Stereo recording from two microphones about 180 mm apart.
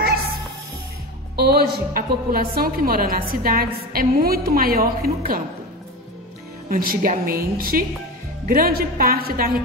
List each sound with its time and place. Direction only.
1.3 s a woman's voice: 60° right (ahead or behind)
6.7 s a woman's voice: 50° right (ahead or behind)